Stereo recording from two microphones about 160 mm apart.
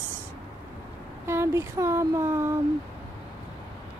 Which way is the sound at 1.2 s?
15° right (ahead or behind).